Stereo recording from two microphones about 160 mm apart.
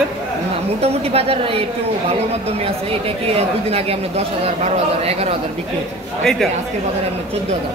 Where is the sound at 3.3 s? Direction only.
40° right (ahead or behind).